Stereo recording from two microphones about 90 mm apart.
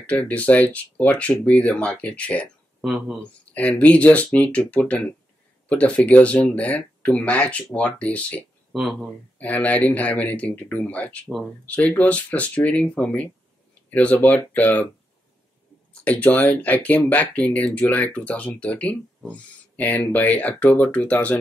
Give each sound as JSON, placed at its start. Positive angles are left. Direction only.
{"t": 0.0, "sound": "speech", "side_deg": 15}
{"t": 2.8, "sound": "speech", "side_deg": -5}
{"t": 3.5, "sound": "speech", "side_deg": 15}
{"t": 8.7, "sound": "speech", "side_deg": -5}
{"t": 9.4, "sound": "speech", "side_deg": 15}
{"t": 15.9, "sound": "speech", "side_deg": 15}